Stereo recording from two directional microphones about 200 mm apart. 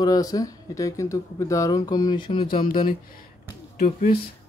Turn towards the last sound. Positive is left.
turn(degrees=50)  # may be behind; listen again after turning